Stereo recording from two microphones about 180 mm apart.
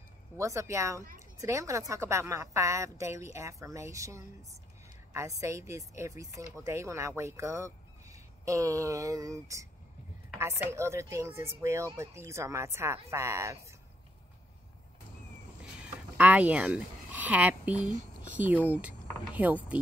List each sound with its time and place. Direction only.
0.4 s speech: 15° right (ahead or behind)
15.8 s a sound: 10° right (ahead or behind)
18.3 s speech: 10° right (ahead or behind)